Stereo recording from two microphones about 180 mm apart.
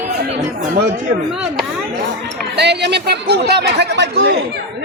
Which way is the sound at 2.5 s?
70° right (ahead or behind).